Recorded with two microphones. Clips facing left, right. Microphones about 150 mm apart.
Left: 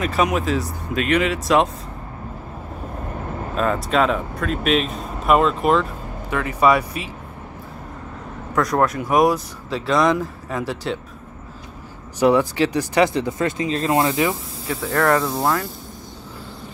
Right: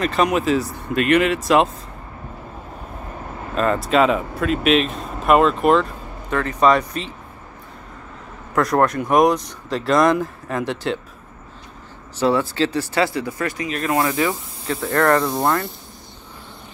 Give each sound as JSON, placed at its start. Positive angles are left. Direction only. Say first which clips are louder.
{"t": 0.0, "sound": "speech", "louder": "right 2 dB", "side_deg": 0}
{"t": 3.5, "sound": "speech", "louder": "right 2 dB", "side_deg": 0}
{"t": 6.3, "sound": "speech", "louder": "right 1 dB", "side_deg": 10}
{"t": 8.5, "sound": "speech", "louder": "right 2 dB", "side_deg": 0}
{"t": 12.2, "sound": "speech", "louder": "left 2 dB", "side_deg": 15}
{"t": 14.7, "sound": "speech", "louder": "right 1 dB", "side_deg": 5}